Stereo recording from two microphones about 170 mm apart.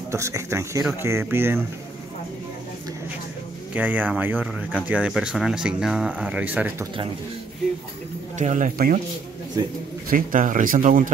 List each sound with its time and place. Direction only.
0.1 s speech: 15° right (ahead or behind)
3.7 s speech: 10° right (ahead or behind)
8.4 s speech: 50° right (ahead or behind)
10.0 s speech: 55° right (ahead or behind)